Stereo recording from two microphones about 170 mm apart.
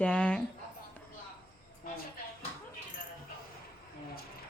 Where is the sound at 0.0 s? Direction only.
5° left (ahead or behind).